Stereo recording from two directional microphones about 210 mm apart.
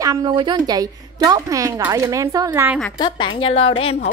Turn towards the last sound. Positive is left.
turn(degrees=25)  # may be behind; listen again after turning